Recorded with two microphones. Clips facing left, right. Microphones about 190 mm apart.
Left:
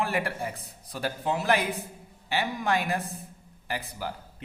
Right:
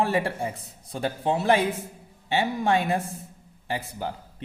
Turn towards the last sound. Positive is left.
turn(degrees=-25)  # may be behind; listen again after turning